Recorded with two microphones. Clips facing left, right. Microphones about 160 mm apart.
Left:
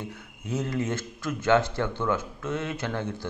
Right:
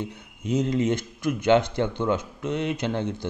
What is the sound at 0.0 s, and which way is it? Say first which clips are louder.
Speech: right 5 dB; 20° right (ahead or behind).